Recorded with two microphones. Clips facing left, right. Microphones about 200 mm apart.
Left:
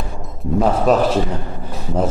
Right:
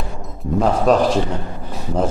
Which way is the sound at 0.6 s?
5° left (ahead or behind).